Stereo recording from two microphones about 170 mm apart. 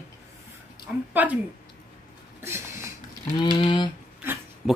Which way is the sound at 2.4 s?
15° right (ahead or behind).